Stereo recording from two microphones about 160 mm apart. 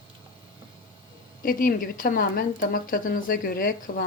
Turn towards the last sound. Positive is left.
turn(degrees=65)  # may be behind; listen again after turning